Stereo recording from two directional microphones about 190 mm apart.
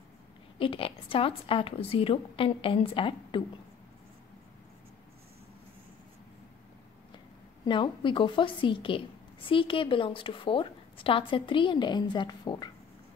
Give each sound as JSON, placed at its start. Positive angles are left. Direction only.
{"t": 0.6, "sound": "a woman's voice", "side_deg": 30}
{"t": 7.6, "sound": "a woman's voice", "side_deg": 25}